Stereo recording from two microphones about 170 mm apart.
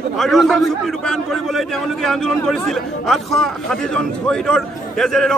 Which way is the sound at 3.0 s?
Centre (ahead or behind).